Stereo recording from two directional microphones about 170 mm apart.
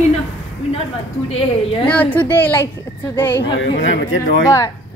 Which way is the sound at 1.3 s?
35° left (ahead or behind).